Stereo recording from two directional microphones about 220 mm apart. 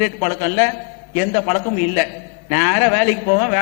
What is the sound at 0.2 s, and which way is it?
A man's voice, 15° left (ahead or behind).